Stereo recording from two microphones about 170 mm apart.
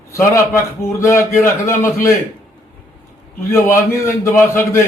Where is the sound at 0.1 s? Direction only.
15° left (ahead or behind).